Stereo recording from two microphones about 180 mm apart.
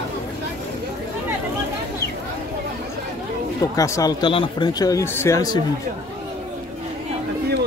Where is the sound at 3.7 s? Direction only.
20° left (ahead or behind).